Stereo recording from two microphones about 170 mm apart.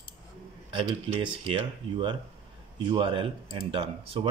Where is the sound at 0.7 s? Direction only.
30° right (ahead or behind).